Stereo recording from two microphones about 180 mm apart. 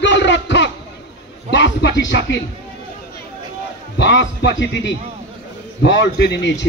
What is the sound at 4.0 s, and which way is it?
Speech, 80° left.